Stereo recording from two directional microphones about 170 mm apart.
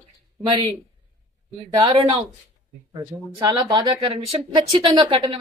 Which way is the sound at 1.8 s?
25° right (ahead or behind).